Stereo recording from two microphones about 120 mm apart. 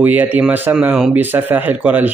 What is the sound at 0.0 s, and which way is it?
A man's voice, 15° right (ahead or behind).